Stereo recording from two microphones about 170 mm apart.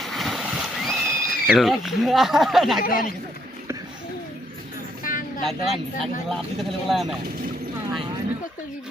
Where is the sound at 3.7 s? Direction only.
15° right (ahead or behind).